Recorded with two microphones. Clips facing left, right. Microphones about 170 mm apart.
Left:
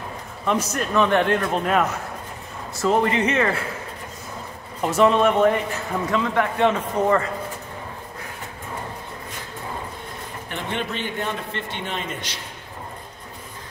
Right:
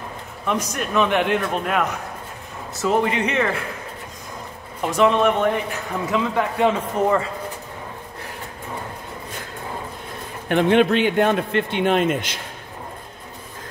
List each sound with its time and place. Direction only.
0.5 s speech: 10° right (ahead or behind)
4.8 s speech: centre (ahead or behind)
6.1 s speech: 15° right (ahead or behind)
10.5 s a man's voice: 70° right (ahead or behind)